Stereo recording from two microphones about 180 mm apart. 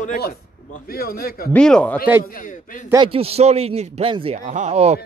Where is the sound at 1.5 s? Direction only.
5° left (ahead or behind).